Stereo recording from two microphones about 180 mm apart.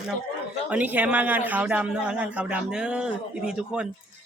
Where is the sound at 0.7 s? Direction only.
10° right (ahead or behind).